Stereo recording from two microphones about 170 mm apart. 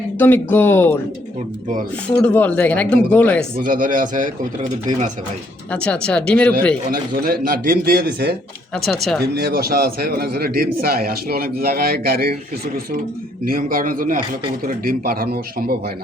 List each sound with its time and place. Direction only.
0.2 s speech: 10° left (ahead or behind)
2.0 s speech: 10° left (ahead or behind)
3.6 s speech: 50° right (ahead or behind)
5.7 s speech: 5° left (ahead or behind)
6.9 s a man's voice: 60° right (ahead or behind)
8.7 s speech: centre (ahead or behind)
9.3 s a man's voice: 65° right (ahead or behind)